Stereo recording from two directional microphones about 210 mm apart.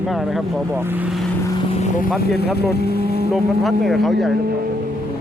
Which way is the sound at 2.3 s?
50° left (ahead or behind).